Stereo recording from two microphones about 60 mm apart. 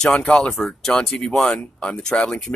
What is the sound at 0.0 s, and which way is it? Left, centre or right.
Speech, centre.